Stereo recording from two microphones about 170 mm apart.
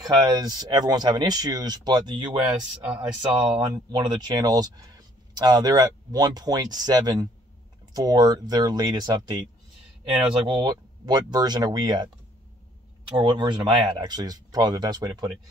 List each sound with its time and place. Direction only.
0.1 s speech: 25° right (ahead or behind)
2.8 s speech: 5° right (ahead or behind)
3.2 s speech: 20° right (ahead or behind)
13.2 s speech: 25° right (ahead or behind)